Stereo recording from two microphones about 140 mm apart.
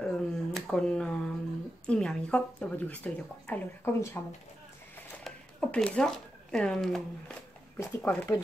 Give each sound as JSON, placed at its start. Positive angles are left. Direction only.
{"t": 0.0, "sound": "a sound", "side_deg": 5}
{"t": 1.9, "sound": "speech", "side_deg": 5}
{"t": 5.2, "sound": "speech", "side_deg": 5}
{"t": 7.7, "sound": "speech", "side_deg": 15}